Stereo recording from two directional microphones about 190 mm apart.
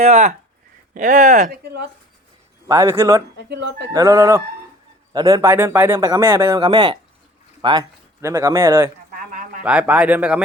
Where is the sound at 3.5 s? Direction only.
65° right (ahead or behind).